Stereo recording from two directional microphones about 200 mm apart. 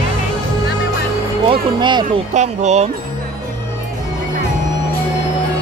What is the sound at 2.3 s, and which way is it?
Speech, 35° right (ahead or behind).